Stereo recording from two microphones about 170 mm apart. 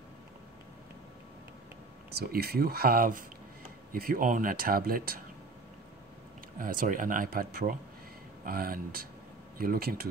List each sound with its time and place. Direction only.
2.1 s speech: 65° right (ahead or behind)
6.6 s speech: 55° right (ahead or behind)